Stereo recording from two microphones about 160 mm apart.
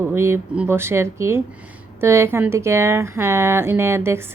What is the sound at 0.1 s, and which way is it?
A woman's voice, 15° right (ahead or behind).